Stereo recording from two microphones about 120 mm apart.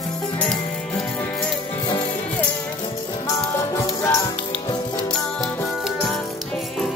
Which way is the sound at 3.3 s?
25° left (ahead or behind).